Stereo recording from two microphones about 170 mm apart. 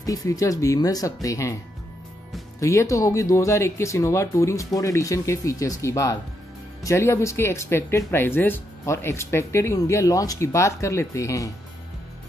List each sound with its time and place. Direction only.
0.0 s speech: 20° left (ahead or behind)
2.6 s speech: 20° left (ahead or behind)